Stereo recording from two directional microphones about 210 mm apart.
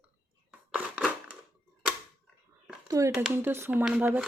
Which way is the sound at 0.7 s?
5° right (ahead or behind).